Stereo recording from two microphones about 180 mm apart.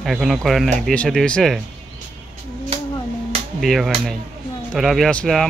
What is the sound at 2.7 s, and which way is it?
Music, 30° right (ahead or behind).